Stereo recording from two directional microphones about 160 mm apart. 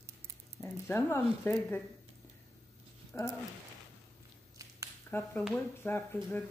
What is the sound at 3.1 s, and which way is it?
Speech, 15° left (ahead or behind).